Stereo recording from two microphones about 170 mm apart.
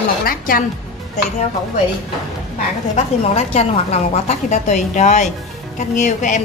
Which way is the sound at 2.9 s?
40° left (ahead or behind).